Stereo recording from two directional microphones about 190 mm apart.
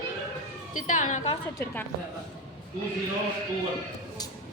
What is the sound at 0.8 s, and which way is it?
Speech, 40° left (ahead or behind).